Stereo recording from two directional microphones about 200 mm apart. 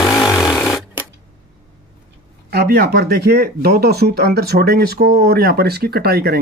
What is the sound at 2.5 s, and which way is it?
Speech, 50° right (ahead or behind).